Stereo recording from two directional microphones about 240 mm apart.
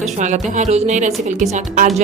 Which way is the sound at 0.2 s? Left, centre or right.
Right.